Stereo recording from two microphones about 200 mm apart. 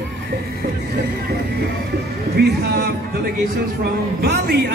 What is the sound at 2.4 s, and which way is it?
Speech, 55° right (ahead or behind).